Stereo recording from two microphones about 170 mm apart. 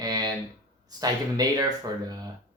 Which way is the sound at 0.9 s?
20° right (ahead or behind).